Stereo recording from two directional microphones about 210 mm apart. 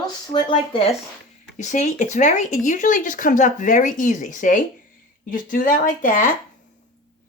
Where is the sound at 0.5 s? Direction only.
25° left (ahead or behind).